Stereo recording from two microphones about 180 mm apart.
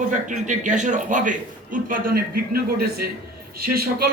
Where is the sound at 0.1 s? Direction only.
45° right (ahead or behind).